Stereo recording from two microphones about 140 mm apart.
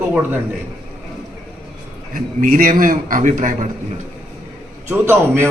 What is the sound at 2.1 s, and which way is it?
A man's voice, 80° right.